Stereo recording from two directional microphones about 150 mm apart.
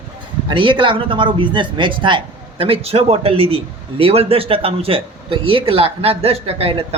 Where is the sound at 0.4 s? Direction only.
35° right (ahead or behind).